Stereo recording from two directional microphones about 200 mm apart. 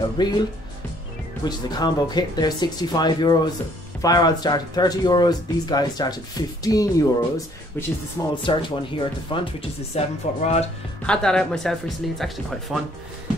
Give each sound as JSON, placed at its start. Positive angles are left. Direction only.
{"t": 0.2, "sound": "speech", "side_deg": 20}
{"t": 1.4, "sound": "speech", "side_deg": 20}
{"t": 8.5, "sound": "speech", "side_deg": 25}
{"t": 11.1, "sound": "speech", "side_deg": 5}